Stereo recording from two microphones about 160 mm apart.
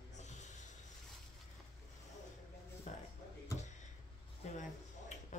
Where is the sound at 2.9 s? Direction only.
45° left (ahead or behind).